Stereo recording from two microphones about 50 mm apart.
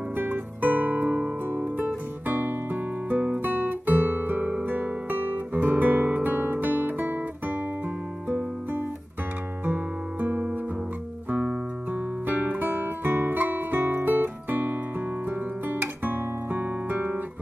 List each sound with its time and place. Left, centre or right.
0.1 s music: right
2.2 s guitar: right
5.5 s music: right
10.2 s guitar: right
12.3 s music: right
15.2 s guitar: right